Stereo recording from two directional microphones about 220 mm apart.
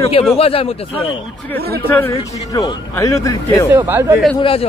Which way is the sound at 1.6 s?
45° right (ahead or behind).